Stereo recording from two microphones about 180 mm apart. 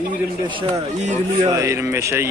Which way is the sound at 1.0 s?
40° right (ahead or behind).